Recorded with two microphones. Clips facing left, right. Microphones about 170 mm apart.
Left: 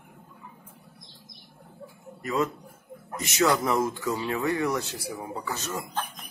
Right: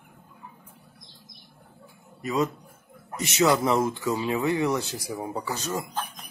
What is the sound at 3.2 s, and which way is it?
A man's voice, 25° right (ahead or behind).